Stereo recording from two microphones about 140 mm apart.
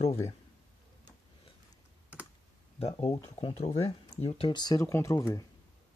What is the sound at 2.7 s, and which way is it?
Speech, 45° left (ahead or behind).